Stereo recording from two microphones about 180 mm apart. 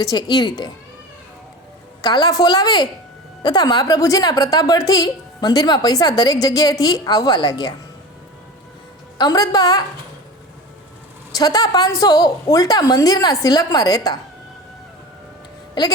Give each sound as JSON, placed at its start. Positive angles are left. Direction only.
{"t": 0.0, "sound": "a woman's voice", "side_deg": 20}
{"t": 2.0, "sound": "a woman's voice", "side_deg": 20}
{"t": 9.1, "sound": "a woman's voice", "side_deg": 20}
{"t": 11.3, "sound": "a woman's voice", "side_deg": 20}
{"t": 15.8, "sound": "a woman's voice", "side_deg": 25}